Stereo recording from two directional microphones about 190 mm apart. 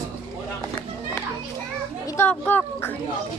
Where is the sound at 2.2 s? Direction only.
10° left (ahead or behind).